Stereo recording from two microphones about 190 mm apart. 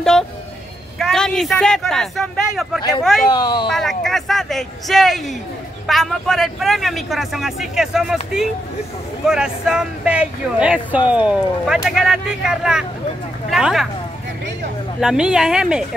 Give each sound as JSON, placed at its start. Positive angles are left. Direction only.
{"t": 0.9, "sound": "speech", "side_deg": 0}
{"t": 3.3, "sound": "speech", "side_deg": 25}
{"t": 3.7, "sound": "speech", "side_deg": 0}
{"t": 15.0, "sound": "speech", "side_deg": -5}